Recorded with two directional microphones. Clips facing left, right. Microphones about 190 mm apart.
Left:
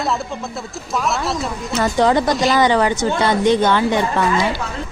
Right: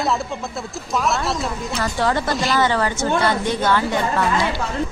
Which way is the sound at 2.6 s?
15° left (ahead or behind).